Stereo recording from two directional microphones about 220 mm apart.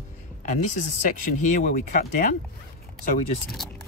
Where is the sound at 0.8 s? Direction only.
35° left (ahead or behind).